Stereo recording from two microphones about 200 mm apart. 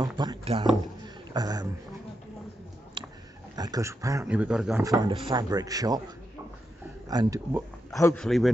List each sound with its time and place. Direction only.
0.0 s a sound: 20° right (ahead or behind)
1.0 s beatboxing: 20° right (ahead or behind)
3.0 s biting: 25° right (ahead or behind)
3.5 s a man's voice: 20° right (ahead or behind)
4.8 s speech: 20° right (ahead or behind)
7.1 s a man's voice: 20° right (ahead or behind)
8.0 s a man's voice: 5° left (ahead or behind)